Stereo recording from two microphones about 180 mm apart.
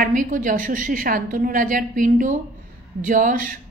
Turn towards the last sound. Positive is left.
turn(degrees=-45)  # may be behind; listen again after turning